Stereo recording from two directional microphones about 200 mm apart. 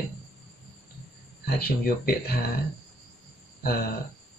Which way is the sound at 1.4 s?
50° left (ahead or behind).